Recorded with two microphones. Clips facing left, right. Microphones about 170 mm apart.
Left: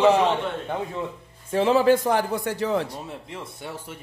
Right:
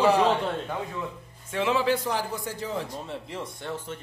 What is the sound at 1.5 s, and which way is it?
A man's voice, 35° left (ahead or behind).